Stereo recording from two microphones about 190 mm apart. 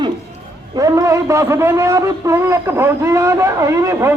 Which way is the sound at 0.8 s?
15° right (ahead or behind).